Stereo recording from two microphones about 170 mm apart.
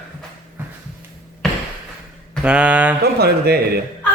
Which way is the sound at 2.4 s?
5° right (ahead or behind).